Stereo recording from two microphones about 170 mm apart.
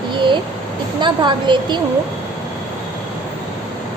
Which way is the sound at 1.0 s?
25° right (ahead or behind).